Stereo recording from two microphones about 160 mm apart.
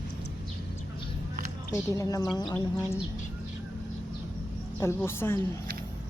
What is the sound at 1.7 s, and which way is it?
A woman's voice, 20° left (ahead or behind).